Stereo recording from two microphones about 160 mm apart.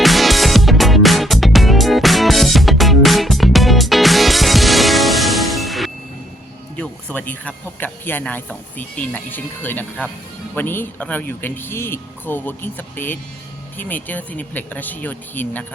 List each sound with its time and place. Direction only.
0.0 s music: centre (ahead or behind)
6.7 s speech: 10° left (ahead or behind)